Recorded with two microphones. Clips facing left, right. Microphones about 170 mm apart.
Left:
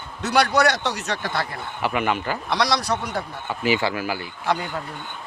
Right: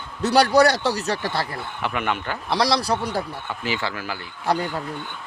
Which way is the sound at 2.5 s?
30° right (ahead or behind).